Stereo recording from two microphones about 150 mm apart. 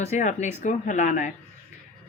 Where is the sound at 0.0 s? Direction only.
50° left (ahead or behind).